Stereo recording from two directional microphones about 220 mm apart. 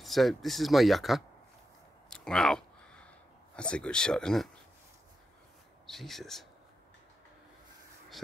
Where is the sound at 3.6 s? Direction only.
5° left (ahead or behind).